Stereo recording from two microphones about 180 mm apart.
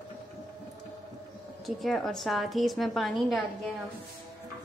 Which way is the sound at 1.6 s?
Centre (ahead or behind).